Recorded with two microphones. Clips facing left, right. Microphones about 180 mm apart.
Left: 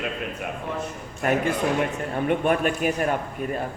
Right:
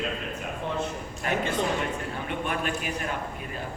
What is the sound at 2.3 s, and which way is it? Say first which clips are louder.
Speech: left 9 dB; 50° left (ahead or behind).